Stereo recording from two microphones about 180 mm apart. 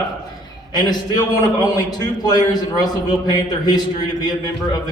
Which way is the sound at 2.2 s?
20° left (ahead or behind).